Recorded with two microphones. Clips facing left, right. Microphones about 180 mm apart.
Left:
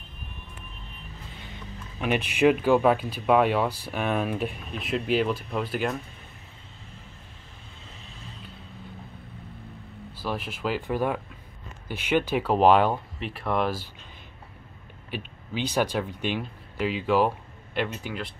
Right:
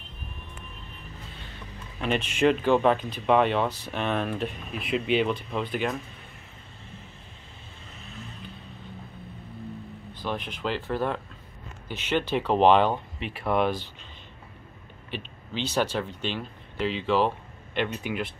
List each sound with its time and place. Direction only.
2.0 s speech: 10° left (ahead or behind)
10.1 s speech: 5° left (ahead or behind)
15.0 s speech: 10° left (ahead or behind)
18.0 s speech: 15° right (ahead or behind)